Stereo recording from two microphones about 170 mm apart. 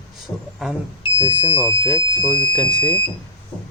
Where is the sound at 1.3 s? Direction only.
25° right (ahead or behind).